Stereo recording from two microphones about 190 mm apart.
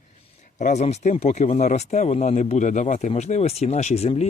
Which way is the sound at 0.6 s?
35° left (ahead or behind).